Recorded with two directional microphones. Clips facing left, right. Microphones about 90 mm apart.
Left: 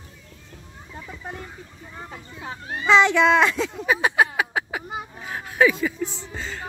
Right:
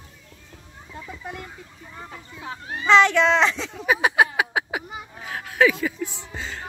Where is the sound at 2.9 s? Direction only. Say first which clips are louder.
Even; 15° left (ahead or behind); by 4.8 s 10° right (ahead or behind).